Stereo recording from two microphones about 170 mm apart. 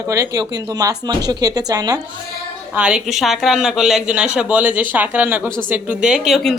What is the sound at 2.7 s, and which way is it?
A woman's voice, 5° right (ahead or behind).